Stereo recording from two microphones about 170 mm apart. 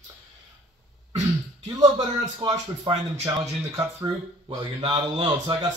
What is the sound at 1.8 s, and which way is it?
Speech, 25° right (ahead or behind).